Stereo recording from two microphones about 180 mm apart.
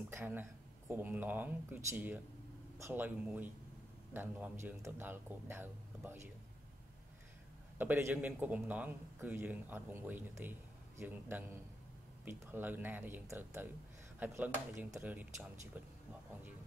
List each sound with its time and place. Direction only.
0.1 s a man's voice: 10° right (ahead or behind)
7.7 s a man's voice: 10° right (ahead or behind)